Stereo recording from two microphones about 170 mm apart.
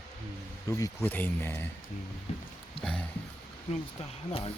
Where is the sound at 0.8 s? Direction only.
10° left (ahead or behind).